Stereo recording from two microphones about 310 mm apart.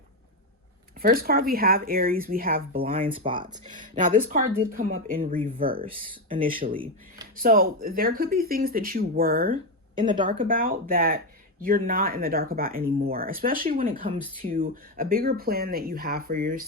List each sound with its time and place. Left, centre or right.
1.0 s speech: right
10.0 s a woman's voice: centre
10.2 s speech: right